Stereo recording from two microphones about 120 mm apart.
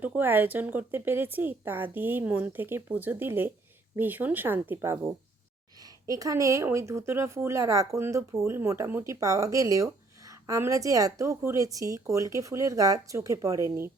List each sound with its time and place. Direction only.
0.0 s speech: 15° right (ahead or behind)